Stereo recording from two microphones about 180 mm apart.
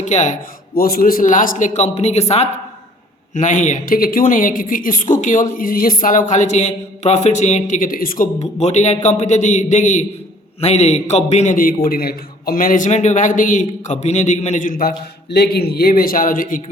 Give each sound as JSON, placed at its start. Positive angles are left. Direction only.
{"t": 0.0, "sound": "a man's voice", "side_deg": 40}
{"t": 0.7, "sound": "a man's voice", "side_deg": 55}
{"t": 3.3, "sound": "a man's voice", "side_deg": 40}
{"t": 8.4, "sound": "a man's voice", "side_deg": 40}